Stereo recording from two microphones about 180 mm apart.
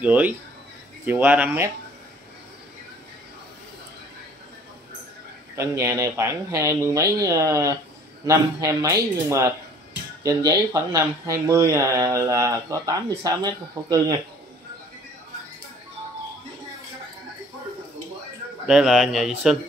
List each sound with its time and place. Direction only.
0.0 s speech: 10° right (ahead or behind)
5.6 s speech: 15° right (ahead or behind)
18.7 s speech: 5° right (ahead or behind)